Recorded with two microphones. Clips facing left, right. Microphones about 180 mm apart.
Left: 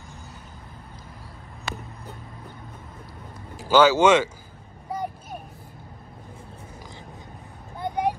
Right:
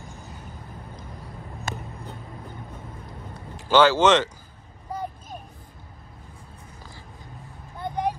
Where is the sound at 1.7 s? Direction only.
45° right (ahead or behind).